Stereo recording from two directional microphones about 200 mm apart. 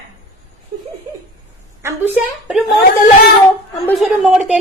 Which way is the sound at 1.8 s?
10° right (ahead or behind).